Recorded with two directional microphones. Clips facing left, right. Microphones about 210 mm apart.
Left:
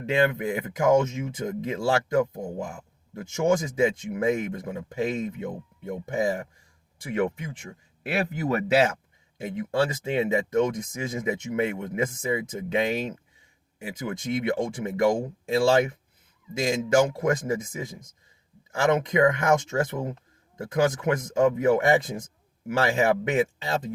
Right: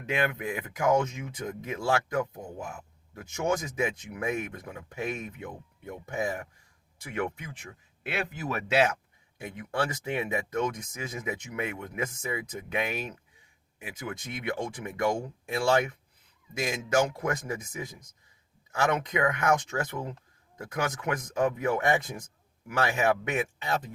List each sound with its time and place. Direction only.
0.0 s speech: 30° left (ahead or behind)